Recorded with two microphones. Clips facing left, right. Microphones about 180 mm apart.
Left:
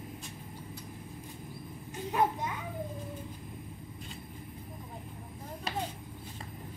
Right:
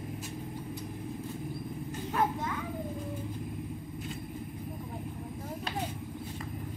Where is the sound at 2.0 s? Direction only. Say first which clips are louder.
Left 1 dB; 15° left (ahead or behind).